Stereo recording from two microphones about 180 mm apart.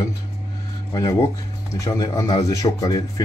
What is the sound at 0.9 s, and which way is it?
A man's voice, 20° left (ahead or behind).